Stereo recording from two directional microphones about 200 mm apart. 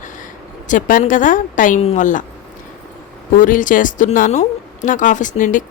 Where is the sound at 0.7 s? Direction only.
40° left (ahead or behind).